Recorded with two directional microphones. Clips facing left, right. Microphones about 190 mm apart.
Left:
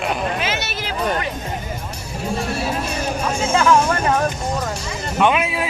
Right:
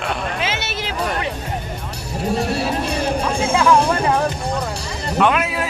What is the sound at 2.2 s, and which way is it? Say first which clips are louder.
Music: right 3 dB; 35° right (ahead or behind).